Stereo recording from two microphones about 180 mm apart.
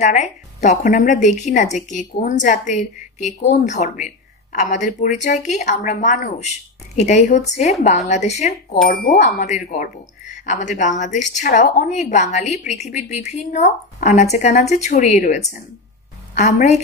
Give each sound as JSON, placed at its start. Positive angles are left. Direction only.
{"t": 0.0, "sound": "speech", "side_deg": 40}
{"t": 9.0, "sound": "speech", "side_deg": 65}
{"t": 9.4, "sound": "speech", "side_deg": 40}